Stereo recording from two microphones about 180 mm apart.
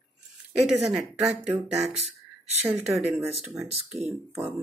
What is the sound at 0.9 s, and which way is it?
Speech, 5° right (ahead or behind).